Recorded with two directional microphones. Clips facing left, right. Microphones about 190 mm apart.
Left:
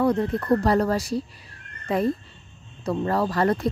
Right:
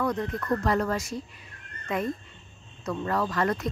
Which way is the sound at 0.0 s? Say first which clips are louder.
Left 6 dB; 30° left (ahead or behind).